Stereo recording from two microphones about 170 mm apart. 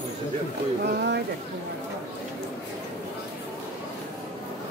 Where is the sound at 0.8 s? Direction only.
75° right (ahead or behind).